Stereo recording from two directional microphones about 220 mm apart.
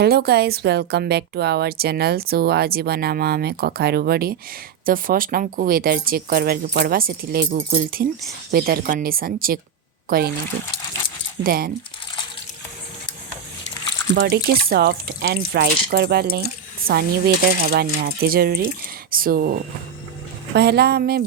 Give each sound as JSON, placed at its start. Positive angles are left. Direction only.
{"t": 0.0, "sound": "a woman's voice", "side_deg": -45}
{"t": 11.4, "sound": "speech", "side_deg": -40}
{"t": 14.2, "sound": "a woman's voice", "side_deg": -45}